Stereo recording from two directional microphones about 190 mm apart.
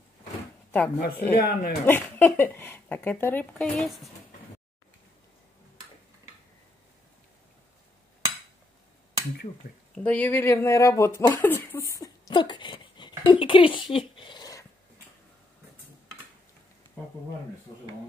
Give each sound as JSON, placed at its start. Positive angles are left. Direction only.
{"t": 0.7, "sound": "speech", "side_deg": 10}
{"t": 1.3, "sound": "speech", "side_deg": 50}
{"t": 1.9, "sound": "speech", "side_deg": 10}
{"t": 9.9, "sound": "speech", "side_deg": 10}
{"t": 13.9, "sound": "a sound", "side_deg": 25}